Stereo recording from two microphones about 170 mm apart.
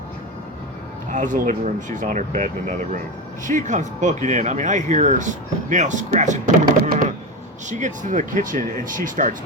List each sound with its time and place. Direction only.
1.1 s speech: 50° right (ahead or behind)
6.8 s typing: 60° right (ahead or behind)
7.7 s speech: 45° right (ahead or behind)